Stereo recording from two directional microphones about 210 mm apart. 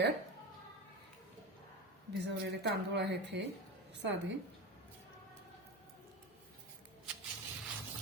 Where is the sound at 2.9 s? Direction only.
55° right (ahead or behind).